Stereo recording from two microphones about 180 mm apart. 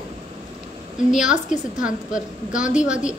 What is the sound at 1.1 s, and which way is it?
A woman's voice, 5° right (ahead or behind).